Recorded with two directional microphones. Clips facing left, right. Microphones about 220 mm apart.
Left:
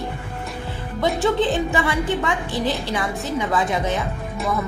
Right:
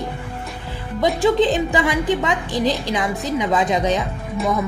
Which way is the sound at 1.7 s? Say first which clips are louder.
Right 3 dB; 15° right (ahead or behind).